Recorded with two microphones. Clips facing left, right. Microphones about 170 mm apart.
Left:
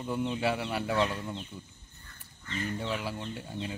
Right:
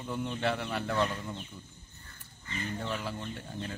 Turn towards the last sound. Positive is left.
turn(degrees=15)  # may be behind; listen again after turning